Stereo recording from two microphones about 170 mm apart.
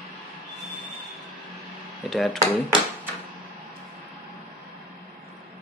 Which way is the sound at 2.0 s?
Centre (ahead or behind).